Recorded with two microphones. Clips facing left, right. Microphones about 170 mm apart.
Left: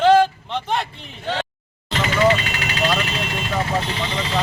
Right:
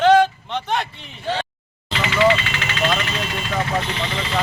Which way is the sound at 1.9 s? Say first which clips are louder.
Even; 45° left (ahead or behind).